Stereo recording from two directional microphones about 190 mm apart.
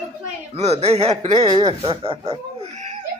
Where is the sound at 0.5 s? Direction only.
35° right (ahead or behind).